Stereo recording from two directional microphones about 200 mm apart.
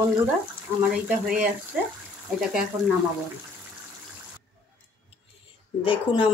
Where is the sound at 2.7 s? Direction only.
15° right (ahead or behind).